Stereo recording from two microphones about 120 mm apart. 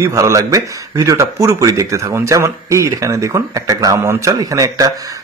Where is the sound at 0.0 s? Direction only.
25° right (ahead or behind).